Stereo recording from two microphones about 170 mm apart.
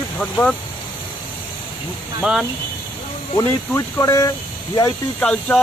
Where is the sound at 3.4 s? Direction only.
15° left (ahead or behind).